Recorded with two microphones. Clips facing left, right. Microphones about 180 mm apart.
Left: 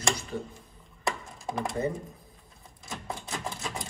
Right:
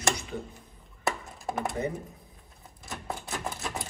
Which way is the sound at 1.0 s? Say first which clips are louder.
Right 1 dB; centre (ahead or behind).